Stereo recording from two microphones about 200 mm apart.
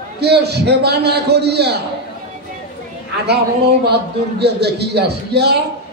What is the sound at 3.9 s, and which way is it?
A man's voice, 55° right (ahead or behind).